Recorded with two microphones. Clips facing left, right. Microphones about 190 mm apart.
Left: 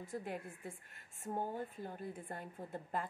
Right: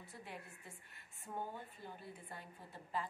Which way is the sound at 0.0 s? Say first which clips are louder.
Left 9 dB; 50° left (ahead or behind).